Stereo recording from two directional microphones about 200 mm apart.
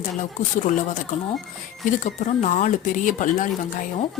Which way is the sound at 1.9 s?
40° left (ahead or behind).